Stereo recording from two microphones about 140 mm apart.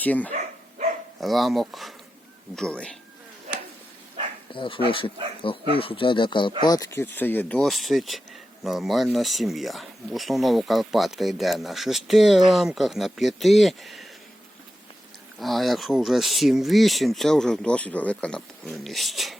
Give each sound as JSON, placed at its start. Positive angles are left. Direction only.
{"t": 0.0, "sound": "speech", "side_deg": 10}
{"t": 1.2, "sound": "speech", "side_deg": 0}
{"t": 4.5, "sound": "speech", "side_deg": 35}
{"t": 15.4, "sound": "speech", "side_deg": 0}